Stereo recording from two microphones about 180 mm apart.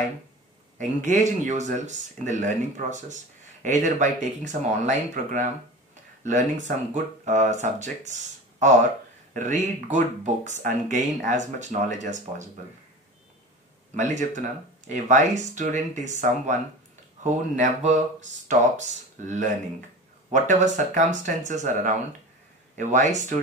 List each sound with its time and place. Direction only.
0.7 s speech: 40° right (ahead or behind)
13.9 s speech: 40° right (ahead or behind)